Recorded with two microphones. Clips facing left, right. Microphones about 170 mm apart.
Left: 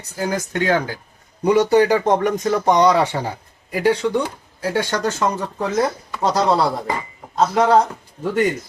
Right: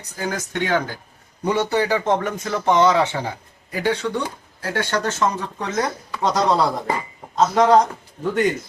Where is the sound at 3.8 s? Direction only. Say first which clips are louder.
Left 4 dB; 10° left (ahead or behind).